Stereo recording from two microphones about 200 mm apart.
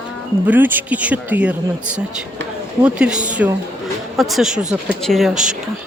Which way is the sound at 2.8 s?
5° right (ahead or behind).